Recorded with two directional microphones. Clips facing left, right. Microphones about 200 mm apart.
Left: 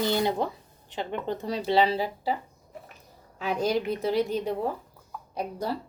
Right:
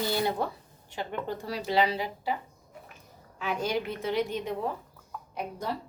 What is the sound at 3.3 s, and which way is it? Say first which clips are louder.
A woman's voice: left 4 dB; 35° left (ahead or behind).